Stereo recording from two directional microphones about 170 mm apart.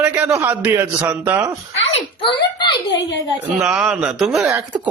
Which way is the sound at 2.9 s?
90° left.